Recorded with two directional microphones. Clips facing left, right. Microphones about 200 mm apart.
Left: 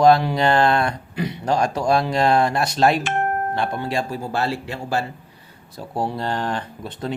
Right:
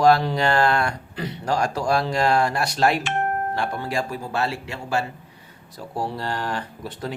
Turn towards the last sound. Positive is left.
turn(degrees=20)  # may be behind; listen again after turning